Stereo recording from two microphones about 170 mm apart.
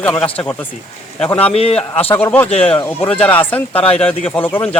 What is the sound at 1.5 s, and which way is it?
Speech, 35° left (ahead or behind).